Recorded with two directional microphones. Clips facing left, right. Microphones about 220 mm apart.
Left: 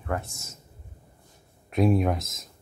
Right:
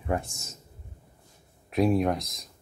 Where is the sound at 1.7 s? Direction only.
Centre (ahead or behind).